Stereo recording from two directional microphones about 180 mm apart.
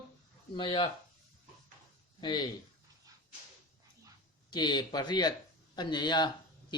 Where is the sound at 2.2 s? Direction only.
25° left (ahead or behind).